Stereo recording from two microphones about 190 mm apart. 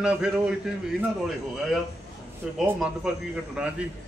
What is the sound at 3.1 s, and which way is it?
Speech, 5° right (ahead or behind).